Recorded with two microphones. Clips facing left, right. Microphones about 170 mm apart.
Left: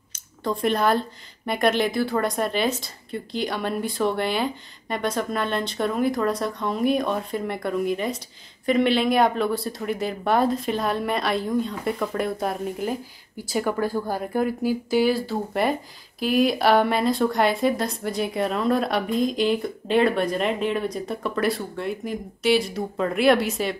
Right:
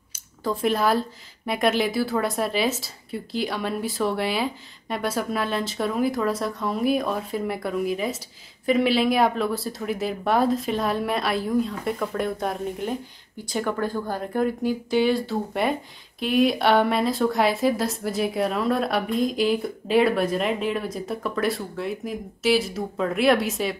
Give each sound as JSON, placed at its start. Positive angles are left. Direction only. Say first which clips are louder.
{"t": 0.1, "sound": "speech", "louder": "even", "side_deg": -5}